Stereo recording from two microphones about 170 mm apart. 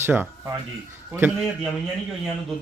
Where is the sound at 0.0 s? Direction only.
10° right (ahead or behind).